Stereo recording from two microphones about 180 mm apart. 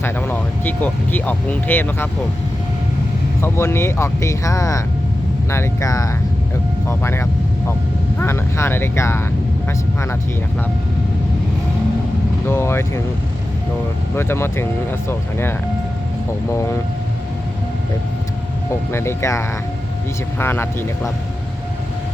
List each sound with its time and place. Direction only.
0.0 s speech: 10° left (ahead or behind)
3.4 s speech: 15° left (ahead or behind)
12.5 s speech: 15° left (ahead or behind)
14.2 s speech: 15° left (ahead or behind)
16.5 s speech: 15° left (ahead or behind)
18.9 s speech: 15° left (ahead or behind)